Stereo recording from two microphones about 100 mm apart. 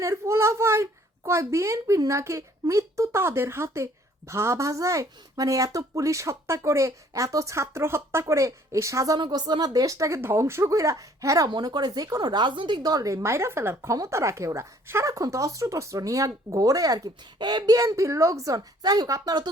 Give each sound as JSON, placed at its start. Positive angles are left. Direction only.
{"t": 0.0, "sound": "a child's voice", "side_deg": -30}
{"t": 9.1, "sound": "speech", "side_deg": -45}
{"t": 11.4, "sound": "speech", "side_deg": -45}
{"t": 17.3, "sound": "speech", "side_deg": -45}